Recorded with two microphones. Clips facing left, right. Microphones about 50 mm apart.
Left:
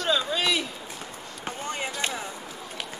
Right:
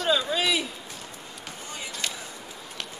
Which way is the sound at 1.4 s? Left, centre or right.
Left.